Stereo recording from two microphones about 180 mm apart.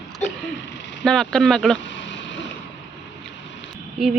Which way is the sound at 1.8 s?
90° left.